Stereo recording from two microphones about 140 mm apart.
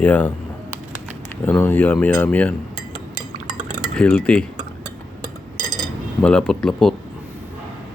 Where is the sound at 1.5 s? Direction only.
15° left (ahead or behind).